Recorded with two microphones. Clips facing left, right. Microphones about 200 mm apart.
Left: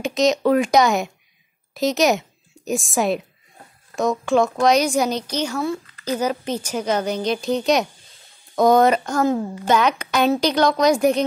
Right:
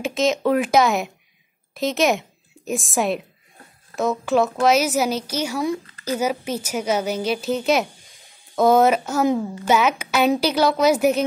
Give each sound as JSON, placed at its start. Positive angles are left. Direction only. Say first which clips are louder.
{"t": 0.0, "sound": "a woman's voice", "louder": "left 2 dB", "side_deg": 0}